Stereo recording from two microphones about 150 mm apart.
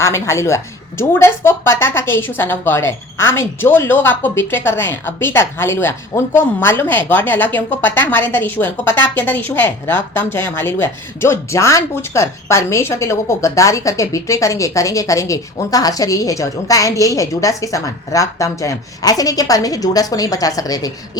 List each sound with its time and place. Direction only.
0.0 s a woman's voice: 20° left (ahead or behind)